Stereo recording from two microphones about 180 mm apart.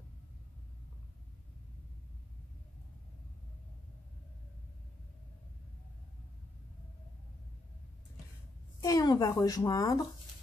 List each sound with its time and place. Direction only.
8.8 s a woman's voice: 20° left (ahead or behind)